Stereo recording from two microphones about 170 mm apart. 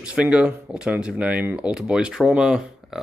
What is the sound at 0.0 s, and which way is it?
Speech, 5° right (ahead or behind).